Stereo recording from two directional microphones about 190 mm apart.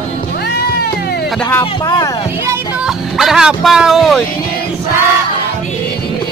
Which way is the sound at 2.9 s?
Centre (ahead or behind).